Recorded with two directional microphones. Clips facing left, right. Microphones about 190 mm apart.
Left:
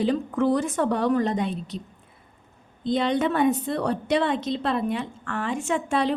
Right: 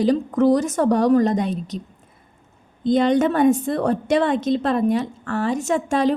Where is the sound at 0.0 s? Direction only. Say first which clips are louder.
Right 5 dB; 40° right (ahead or behind).